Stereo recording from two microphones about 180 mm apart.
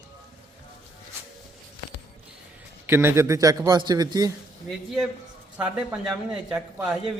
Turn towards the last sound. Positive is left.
turn(degrees=-5)  # may be behind; listen again after turning